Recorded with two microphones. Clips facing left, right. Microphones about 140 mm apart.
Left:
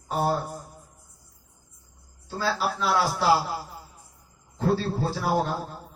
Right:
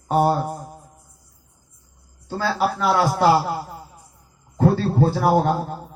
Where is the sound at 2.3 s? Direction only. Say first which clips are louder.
Right 5 dB; 60° right (ahead or behind).